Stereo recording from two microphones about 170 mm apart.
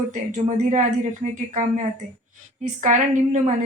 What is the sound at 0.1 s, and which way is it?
Speech, 45° right (ahead or behind).